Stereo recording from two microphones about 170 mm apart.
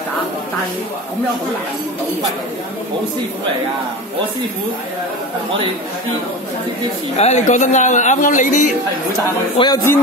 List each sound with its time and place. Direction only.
7.2 s a man's voice: 40° left (ahead or behind)
9.6 s a man's voice: 30° left (ahead or behind)